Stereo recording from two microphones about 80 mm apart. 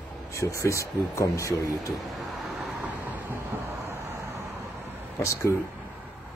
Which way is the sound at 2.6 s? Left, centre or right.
Centre.